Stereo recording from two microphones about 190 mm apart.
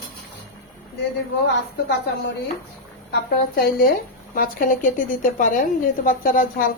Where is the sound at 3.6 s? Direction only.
50° left (ahead or behind).